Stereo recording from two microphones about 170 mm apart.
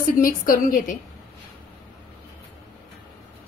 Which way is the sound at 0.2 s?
55° left (ahead or behind).